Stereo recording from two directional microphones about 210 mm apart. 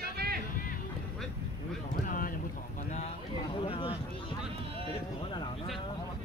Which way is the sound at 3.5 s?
25° left (ahead or behind).